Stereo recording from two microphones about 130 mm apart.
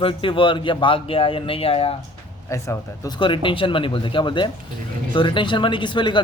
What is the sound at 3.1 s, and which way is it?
Speech, 40° left (ahead or behind).